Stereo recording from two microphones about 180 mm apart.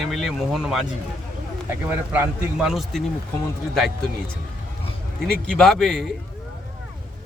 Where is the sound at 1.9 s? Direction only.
10° right (ahead or behind).